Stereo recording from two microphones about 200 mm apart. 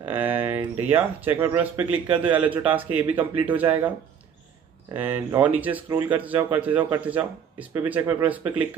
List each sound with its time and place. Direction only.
0.0 s speech: 10° right (ahead or behind)
4.9 s speech: 10° right (ahead or behind)